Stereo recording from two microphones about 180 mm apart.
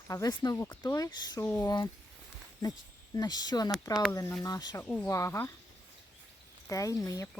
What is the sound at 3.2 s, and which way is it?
Speech, 20° left (ahead or behind).